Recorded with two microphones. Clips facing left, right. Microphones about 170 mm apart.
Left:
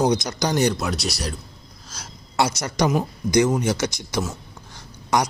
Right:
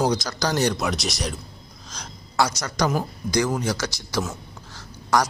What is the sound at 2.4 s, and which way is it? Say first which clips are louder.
A man's voice: left 1 dB; 25° left (ahead or behind).